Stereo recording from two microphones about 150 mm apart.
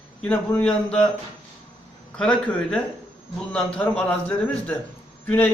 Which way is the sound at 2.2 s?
5° left (ahead or behind).